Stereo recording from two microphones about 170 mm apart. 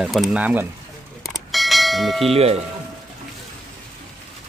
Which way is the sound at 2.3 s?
35° right (ahead or behind).